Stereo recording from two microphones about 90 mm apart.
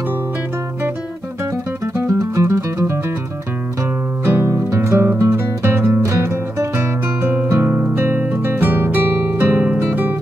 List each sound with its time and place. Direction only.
2.0 s music: 35° right (ahead or behind)
4.2 s music: 25° right (ahead or behind)